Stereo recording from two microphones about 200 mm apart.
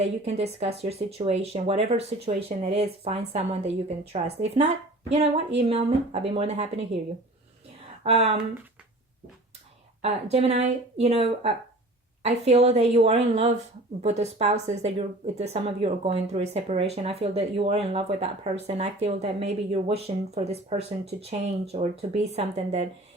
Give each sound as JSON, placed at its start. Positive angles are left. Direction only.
{"t": 0.0, "sound": "speech", "side_deg": -30}
{"t": 8.0, "sound": "speech", "side_deg": -30}
{"t": 10.0, "sound": "speech", "side_deg": -30}